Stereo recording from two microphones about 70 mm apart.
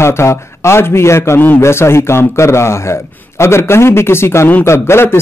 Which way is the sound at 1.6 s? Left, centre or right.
Left.